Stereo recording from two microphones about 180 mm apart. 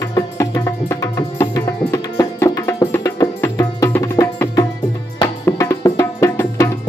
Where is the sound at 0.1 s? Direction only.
15° left (ahead or behind).